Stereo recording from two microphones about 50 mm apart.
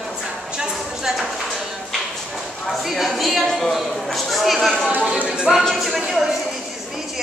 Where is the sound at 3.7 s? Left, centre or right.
Centre.